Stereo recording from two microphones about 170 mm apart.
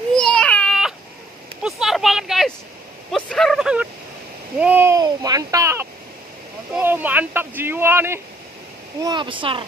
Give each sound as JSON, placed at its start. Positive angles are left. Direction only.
{"t": 0.1, "sound": "baby cry", "side_deg": 5}
{"t": 1.6, "sound": "a sound", "side_deg": -5}
{"t": 3.1, "sound": "speech", "side_deg": 5}
{"t": 9.0, "sound": "speech", "side_deg": -30}